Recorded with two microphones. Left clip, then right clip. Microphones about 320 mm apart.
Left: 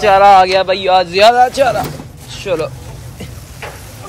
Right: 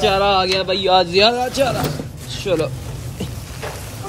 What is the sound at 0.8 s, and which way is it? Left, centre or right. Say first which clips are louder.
Speech: left 3 dB; centre.